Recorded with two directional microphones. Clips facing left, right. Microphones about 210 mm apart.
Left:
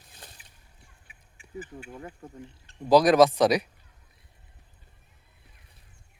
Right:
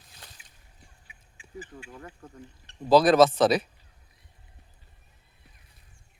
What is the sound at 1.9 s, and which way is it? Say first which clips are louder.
Speech: left 3 dB; 20° left (ahead or behind).